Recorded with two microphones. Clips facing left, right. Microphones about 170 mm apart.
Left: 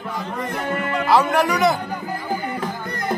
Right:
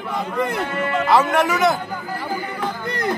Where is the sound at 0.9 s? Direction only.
Centre (ahead or behind).